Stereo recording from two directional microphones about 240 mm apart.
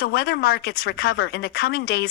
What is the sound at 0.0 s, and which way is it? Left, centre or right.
Speech, left.